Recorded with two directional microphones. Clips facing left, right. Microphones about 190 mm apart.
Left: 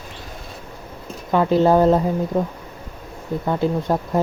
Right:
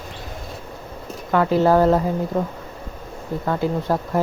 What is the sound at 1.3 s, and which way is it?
Speech, 20° left (ahead or behind).